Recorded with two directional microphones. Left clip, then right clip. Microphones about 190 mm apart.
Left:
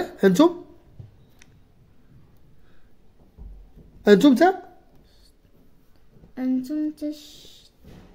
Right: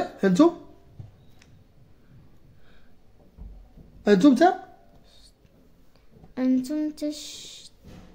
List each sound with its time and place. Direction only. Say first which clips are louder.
0.2 s speech: left 3 dB; 45° left (ahead or behind)
4.0 s a woman's voice: left 2 dB; 45° left (ahead or behind)
6.3 s speech: right 1 dB; 35° right (ahead or behind)